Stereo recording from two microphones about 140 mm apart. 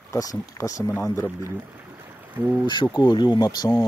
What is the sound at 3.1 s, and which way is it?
Speech, 35° left (ahead or behind).